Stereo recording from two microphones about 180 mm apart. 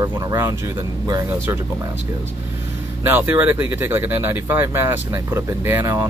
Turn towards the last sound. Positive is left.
turn(degrees=-20)  # may be behind; listen again after turning